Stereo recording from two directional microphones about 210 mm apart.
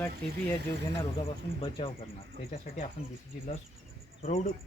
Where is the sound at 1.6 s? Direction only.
25° left (ahead or behind).